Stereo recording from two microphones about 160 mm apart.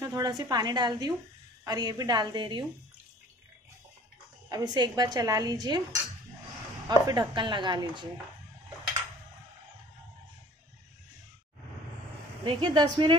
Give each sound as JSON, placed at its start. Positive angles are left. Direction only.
{"t": 0.0, "sound": "a woman's voice", "side_deg": -20}
{"t": 4.5, "sound": "a woman's voice", "side_deg": -25}
{"t": 6.9, "sound": "a woman's voice", "side_deg": -25}
{"t": 12.4, "sound": "a woman's voice", "side_deg": -30}